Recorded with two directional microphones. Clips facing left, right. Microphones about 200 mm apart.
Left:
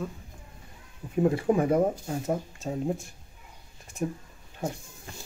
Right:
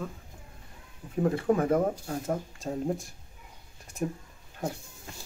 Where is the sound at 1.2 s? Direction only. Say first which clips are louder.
Left 2 dB; 15° left (ahead or behind).